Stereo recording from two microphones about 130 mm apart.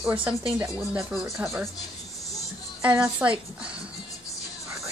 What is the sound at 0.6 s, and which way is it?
Speech, 10° right (ahead or behind).